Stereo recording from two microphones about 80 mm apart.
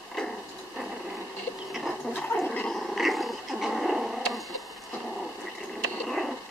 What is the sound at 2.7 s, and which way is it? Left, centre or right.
Dog, centre.